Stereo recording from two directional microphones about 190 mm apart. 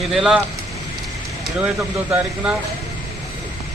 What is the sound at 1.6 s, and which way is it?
Speech, 5° right (ahead or behind).